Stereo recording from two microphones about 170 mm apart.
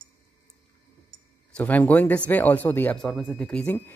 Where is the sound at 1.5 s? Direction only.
10° left (ahead or behind).